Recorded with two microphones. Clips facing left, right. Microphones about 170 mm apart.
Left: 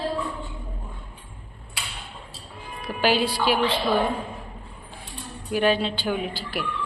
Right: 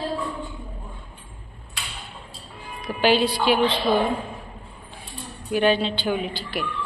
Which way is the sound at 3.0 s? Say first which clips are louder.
Right 2 dB; 5° left (ahead or behind).